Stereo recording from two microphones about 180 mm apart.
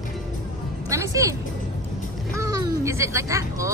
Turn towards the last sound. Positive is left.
turn(degrees=-15)  # may be behind; listen again after turning